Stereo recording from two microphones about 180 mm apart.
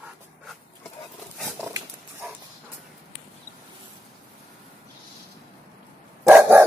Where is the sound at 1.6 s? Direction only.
15° right (ahead or behind).